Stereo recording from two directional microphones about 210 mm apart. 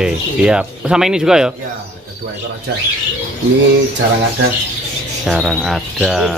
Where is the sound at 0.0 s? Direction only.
5° right (ahead or behind).